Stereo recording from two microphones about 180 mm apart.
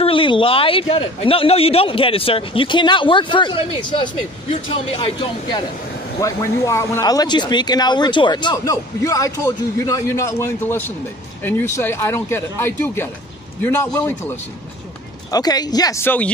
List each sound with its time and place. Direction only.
0.0 s speech: 30° left (ahead or behind)
6.2 s speech: 15° left (ahead or behind)